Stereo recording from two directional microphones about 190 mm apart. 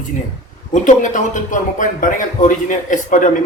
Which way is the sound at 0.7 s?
40° left (ahead or behind).